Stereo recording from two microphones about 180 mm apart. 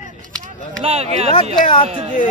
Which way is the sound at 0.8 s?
35° right (ahead or behind).